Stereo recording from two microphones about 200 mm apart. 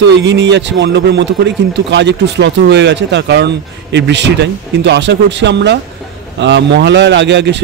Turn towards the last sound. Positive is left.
turn(degrees=-60)  # may be behind; listen again after turning